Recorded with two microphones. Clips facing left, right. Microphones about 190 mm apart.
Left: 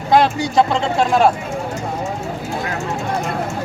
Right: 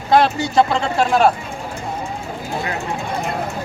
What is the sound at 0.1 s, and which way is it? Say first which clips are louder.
Speech: even; 15° left (ahead or behind).